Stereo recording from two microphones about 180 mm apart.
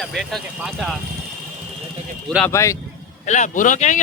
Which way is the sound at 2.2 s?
5° left (ahead or behind).